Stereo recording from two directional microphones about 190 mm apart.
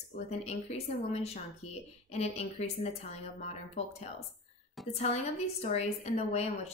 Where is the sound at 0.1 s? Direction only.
35° left (ahead or behind).